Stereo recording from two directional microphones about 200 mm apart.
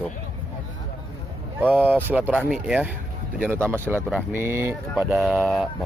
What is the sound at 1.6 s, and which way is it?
Speech, 10° right (ahead or behind).